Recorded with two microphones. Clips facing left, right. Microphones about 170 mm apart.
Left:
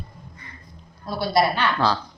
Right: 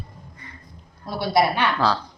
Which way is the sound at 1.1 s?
20° right (ahead or behind).